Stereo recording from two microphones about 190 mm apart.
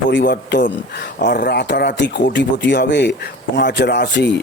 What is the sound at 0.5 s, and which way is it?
Speech, 65° left (ahead or behind).